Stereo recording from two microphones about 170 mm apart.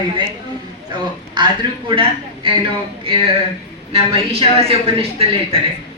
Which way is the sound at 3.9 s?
35° right (ahead or behind).